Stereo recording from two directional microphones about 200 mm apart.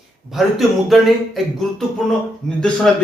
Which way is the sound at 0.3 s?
Centre (ahead or behind).